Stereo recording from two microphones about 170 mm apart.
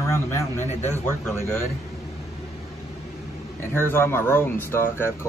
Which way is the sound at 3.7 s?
15° left (ahead or behind).